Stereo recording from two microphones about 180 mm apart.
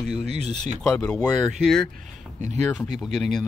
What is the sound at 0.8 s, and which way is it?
Speech, 5° left (ahead or behind).